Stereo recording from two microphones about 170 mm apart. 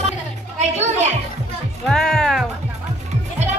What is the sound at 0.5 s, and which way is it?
Music, 40° right (ahead or behind).